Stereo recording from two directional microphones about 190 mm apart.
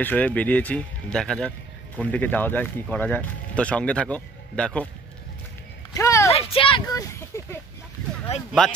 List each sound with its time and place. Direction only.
0.0 s speech: 10° left (ahead or behind)
5.9 s speech: 15° left (ahead or behind)
6.3 s speech: 30° left (ahead or behind)
8.6 s speech: 5° left (ahead or behind)